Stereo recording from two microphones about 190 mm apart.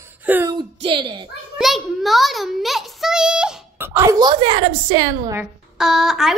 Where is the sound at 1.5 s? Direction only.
Centre (ahead or behind); by 5.3 s 25° right (ahead or behind).